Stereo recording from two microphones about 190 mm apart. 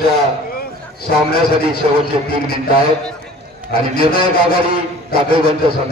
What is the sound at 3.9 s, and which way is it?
A man's voice, 50° left (ahead or behind).